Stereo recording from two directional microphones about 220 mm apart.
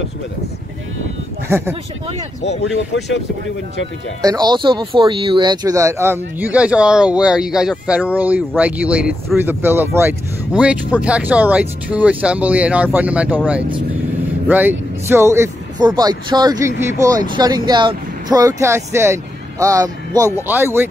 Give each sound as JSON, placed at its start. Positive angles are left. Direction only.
{"t": 2.6, "sound": "speech", "side_deg": 55}
{"t": 4.2, "sound": "speech", "side_deg": -15}
{"t": 14.5, "sound": "speech", "side_deg": -10}